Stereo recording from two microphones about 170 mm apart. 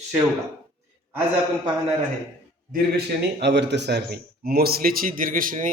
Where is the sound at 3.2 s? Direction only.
90° right.